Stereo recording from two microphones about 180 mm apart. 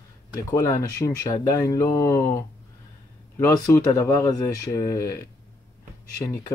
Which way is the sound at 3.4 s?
20° left (ahead or behind).